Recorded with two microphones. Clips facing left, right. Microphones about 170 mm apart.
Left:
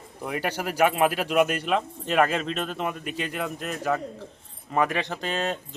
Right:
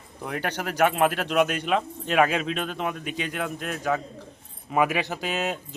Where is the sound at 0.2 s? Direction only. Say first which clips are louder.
Left 1 dB; 5° left (ahead or behind).